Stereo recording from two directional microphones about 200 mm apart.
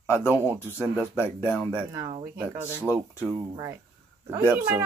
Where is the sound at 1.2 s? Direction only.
10° left (ahead or behind).